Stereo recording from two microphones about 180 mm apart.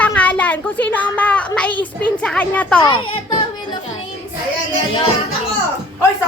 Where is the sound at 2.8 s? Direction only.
25° left (ahead or behind).